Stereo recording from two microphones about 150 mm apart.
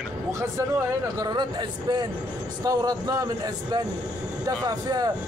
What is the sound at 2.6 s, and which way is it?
Speech, 25° right (ahead or behind).